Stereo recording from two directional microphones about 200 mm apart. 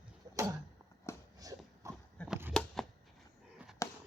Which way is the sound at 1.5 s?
15° right (ahead or behind).